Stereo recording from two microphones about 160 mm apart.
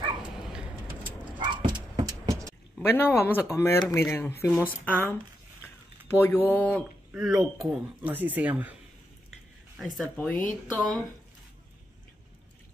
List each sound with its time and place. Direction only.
0.5 s vehicle: 5° right (ahead or behind)
1.4 s dog: 30° right (ahead or behind)
2.8 s speech: 15° left (ahead or behind)
7.1 s speech: 5° right (ahead or behind)
9.8 s speech: centre (ahead or behind)